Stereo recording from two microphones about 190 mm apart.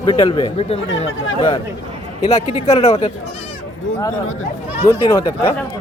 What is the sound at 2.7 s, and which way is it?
Speech, 30° left (ahead or behind).